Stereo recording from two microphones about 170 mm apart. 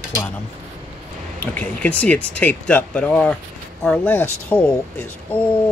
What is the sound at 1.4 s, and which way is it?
Speech, 10° left (ahead or behind).